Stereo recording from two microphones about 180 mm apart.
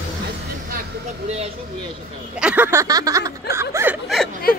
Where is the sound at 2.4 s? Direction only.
10° right (ahead or behind).